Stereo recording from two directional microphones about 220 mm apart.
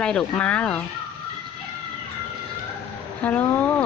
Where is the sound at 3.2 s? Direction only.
5° left (ahead or behind).